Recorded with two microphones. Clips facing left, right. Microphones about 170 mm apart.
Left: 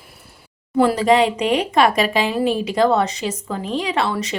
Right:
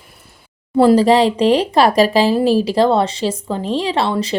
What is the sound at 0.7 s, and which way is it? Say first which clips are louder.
A woman's voice: right 4 dB; 30° right (ahead or behind).